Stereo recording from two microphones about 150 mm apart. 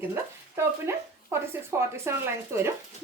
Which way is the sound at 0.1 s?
20° right (ahead or behind).